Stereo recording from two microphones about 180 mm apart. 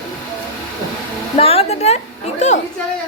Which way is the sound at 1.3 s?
35° left (ahead or behind).